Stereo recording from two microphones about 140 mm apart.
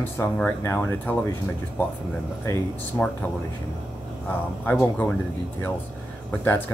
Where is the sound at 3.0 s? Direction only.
20° left (ahead or behind).